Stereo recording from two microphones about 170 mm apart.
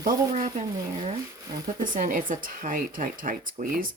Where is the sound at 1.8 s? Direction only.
50° right (ahead or behind).